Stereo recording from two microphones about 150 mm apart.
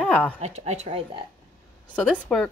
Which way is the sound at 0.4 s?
45° right (ahead or behind).